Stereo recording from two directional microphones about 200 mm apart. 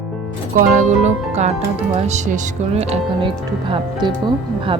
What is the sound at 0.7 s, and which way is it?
Speech, 35° right (ahead or behind).